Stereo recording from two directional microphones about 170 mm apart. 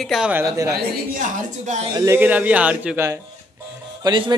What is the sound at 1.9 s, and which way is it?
Speech, 25° right (ahead or behind).